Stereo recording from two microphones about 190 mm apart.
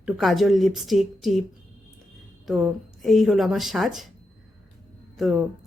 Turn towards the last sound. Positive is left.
turn(degrees=0)  # may be behind; listen again after turning